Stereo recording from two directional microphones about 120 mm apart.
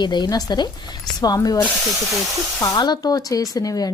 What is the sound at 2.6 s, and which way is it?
Speech, 35° left (ahead or behind).